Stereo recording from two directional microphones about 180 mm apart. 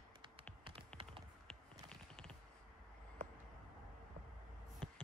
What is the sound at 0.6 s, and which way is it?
Typing, 30° right (ahead or behind).